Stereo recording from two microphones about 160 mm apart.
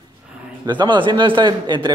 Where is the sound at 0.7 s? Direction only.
30° right (ahead or behind).